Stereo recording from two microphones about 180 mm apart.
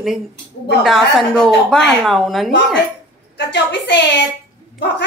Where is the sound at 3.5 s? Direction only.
75° left (ahead or behind).